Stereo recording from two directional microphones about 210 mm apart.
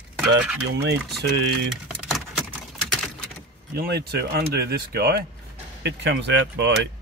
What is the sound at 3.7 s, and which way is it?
Speech, 50° right (ahead or behind).